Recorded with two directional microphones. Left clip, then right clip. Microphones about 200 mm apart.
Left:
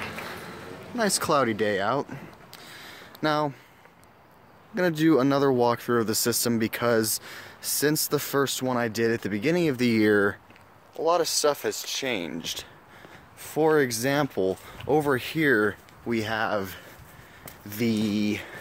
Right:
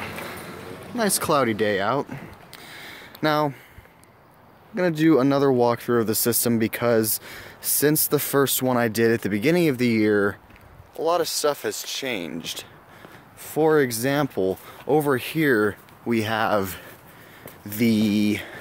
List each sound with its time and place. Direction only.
0.9 s speech: centre (ahead or behind)
4.7 s speech: centre (ahead or behind)
9.8 s speech: 5° left (ahead or behind)
11.0 s speech: 15° right (ahead or behind)
16.1 s speech: 15° right (ahead or behind)
17.6 s speech: 10° right (ahead or behind)